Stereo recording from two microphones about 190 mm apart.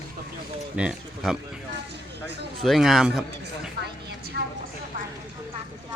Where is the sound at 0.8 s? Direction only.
5° right (ahead or behind).